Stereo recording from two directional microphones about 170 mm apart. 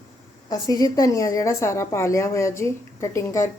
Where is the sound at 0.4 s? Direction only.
20° left (ahead or behind).